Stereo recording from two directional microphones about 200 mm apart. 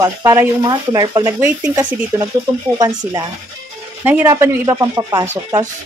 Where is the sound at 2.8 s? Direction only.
20° right (ahead or behind).